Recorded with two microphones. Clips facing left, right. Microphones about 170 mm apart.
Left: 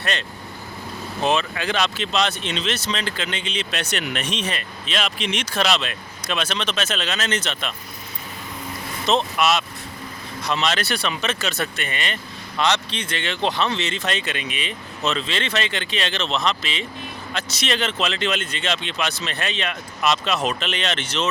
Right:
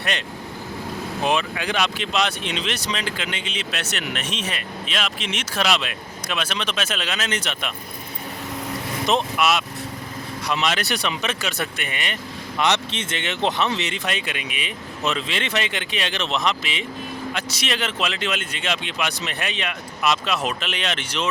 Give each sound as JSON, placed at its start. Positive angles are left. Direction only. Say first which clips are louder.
{"t": 0.0, "sound": "speech", "louder": "even", "side_deg": -15}
{"t": 9.0, "sound": "speech", "louder": "left 1 dB", "side_deg": -10}